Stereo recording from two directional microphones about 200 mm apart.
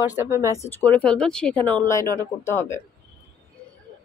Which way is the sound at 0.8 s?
5° left (ahead or behind).